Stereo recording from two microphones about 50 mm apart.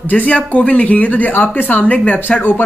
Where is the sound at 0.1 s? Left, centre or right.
Left.